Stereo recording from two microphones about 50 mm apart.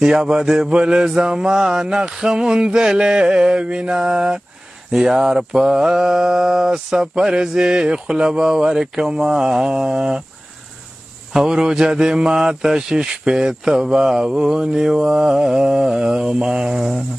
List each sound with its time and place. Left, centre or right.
0.0 s speech: centre
11.3 s speech: centre